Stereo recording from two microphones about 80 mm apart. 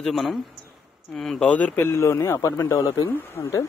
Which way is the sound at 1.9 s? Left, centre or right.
Left.